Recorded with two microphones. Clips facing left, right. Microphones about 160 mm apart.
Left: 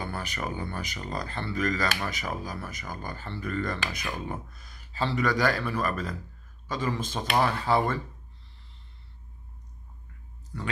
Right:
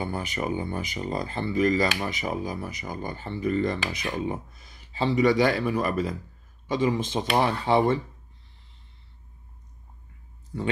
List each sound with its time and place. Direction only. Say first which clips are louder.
0.0 s speech: right 4 dB; 20° right (ahead or behind)